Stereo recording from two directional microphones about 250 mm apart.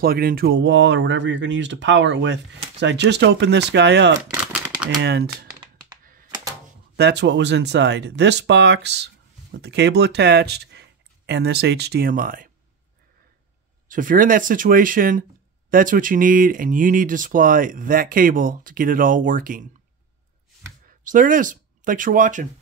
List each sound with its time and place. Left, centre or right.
0.0 s speech: right
4.2 s a sound: centre
5.0 s speech: right
5.6 s computer keyboard: centre
7.0 s speech: right
13.8 s speech: right
20.8 s speech: right